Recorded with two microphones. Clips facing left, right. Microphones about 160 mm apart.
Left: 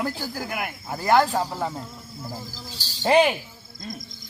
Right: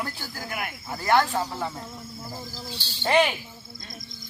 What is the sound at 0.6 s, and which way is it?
Speech, 30° left (ahead or behind).